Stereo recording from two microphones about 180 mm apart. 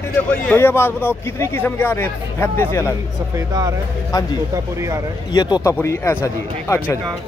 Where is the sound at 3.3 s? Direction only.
20° right (ahead or behind).